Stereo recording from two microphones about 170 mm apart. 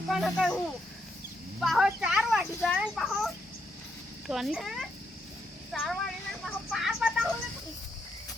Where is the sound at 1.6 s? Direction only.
Centre (ahead or behind).